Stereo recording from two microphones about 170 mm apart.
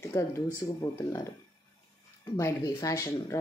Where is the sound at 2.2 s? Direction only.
20° left (ahead or behind).